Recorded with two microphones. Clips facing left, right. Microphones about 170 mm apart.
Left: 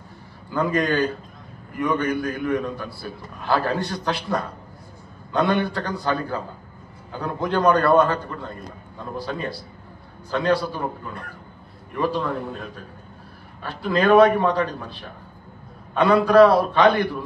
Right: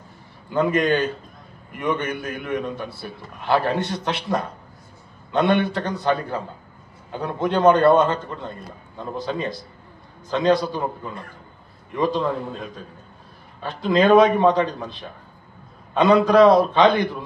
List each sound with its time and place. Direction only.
0.5 s a man's voice: 20° right (ahead or behind)
11.9 s a man's voice: 20° right (ahead or behind)